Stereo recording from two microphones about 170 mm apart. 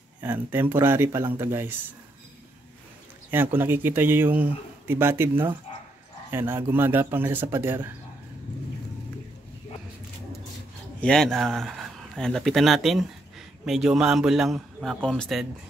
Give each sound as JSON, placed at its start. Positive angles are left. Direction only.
{"t": 0.2, "sound": "speech", "side_deg": -10}
{"t": 3.3, "sound": "speech", "side_deg": -10}
{"t": 11.0, "sound": "a man's voice", "side_deg": 5}